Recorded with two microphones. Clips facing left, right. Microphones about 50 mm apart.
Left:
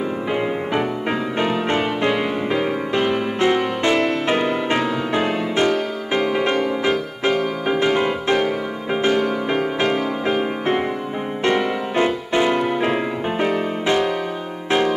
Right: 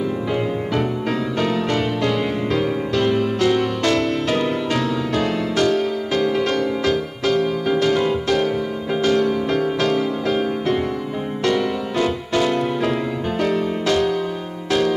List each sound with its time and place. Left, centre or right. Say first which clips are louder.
1.4 s music: left 1 dB; left